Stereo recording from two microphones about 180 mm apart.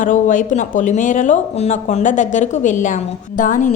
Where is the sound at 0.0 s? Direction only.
45° left (ahead or behind).